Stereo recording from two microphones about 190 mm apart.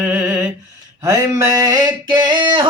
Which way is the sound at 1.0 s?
15° right (ahead or behind).